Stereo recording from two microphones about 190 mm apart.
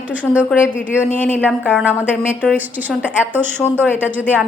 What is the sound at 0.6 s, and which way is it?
Speech, 10° left (ahead or behind).